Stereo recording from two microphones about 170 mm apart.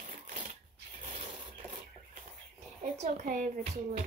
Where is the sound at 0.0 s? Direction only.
50° right (ahead or behind).